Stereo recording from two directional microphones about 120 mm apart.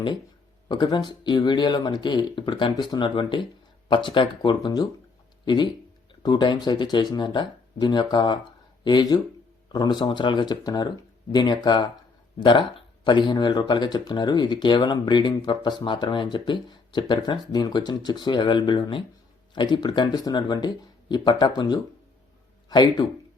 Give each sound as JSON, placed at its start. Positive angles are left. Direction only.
{"t": 0.7, "sound": "speech", "side_deg": 40}
{"t": 6.2, "sound": "speech", "side_deg": 35}